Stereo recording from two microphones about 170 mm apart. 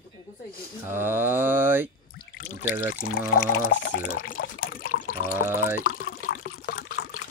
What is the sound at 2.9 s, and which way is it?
Speech, 75° left (ahead or behind).